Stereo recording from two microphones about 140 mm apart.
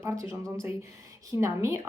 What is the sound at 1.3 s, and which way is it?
Speech, 20° right (ahead or behind).